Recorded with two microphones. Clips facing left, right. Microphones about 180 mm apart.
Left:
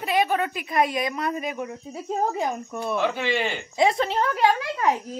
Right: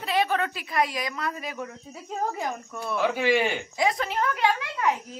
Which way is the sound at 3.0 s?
10° right (ahead or behind).